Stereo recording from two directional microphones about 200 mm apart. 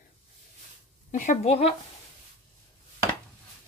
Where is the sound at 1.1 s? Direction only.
35° left (ahead or behind).